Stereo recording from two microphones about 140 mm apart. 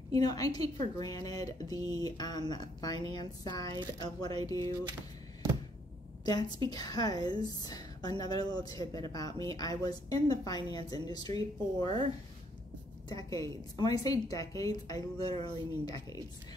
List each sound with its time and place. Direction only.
0.1 s a woman's voice: 25° left (ahead or behind)
6.2 s a woman's voice: 30° left (ahead or behind)
13.1 s a woman's voice: 25° left (ahead or behind)